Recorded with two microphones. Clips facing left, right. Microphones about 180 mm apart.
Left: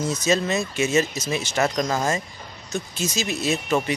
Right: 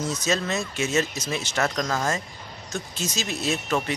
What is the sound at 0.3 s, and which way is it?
Speech, 10° left (ahead or behind).